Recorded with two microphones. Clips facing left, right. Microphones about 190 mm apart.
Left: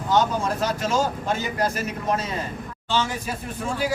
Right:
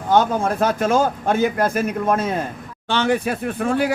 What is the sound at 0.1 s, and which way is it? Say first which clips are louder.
A man's voice: right 4 dB; 55° right (ahead or behind).